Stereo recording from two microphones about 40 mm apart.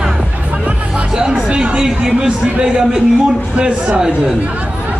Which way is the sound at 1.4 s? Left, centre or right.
Right.